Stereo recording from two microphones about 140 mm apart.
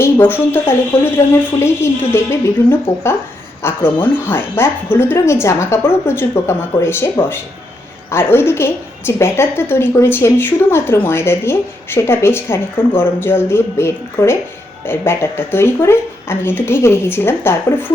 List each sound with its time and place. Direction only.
0.0 s a woman's voice: 15° left (ahead or behind)